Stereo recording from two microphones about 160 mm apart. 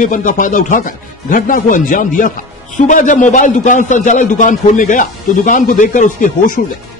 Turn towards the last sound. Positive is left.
turn(degrees=55)  # may be behind; listen again after turning